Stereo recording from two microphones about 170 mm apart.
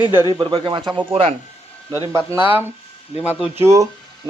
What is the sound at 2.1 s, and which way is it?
Speech, 15° right (ahead or behind).